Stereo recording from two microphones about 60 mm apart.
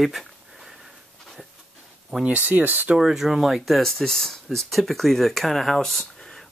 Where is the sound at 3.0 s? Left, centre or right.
Centre.